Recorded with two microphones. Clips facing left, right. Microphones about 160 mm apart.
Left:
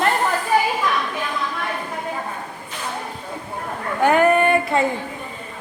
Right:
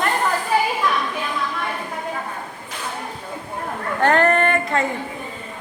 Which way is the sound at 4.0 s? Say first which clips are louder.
Left 2 dB; 10° left (ahead or behind).